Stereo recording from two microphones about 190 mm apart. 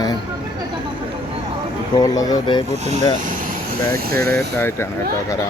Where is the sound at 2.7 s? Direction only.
35° right (ahead or behind).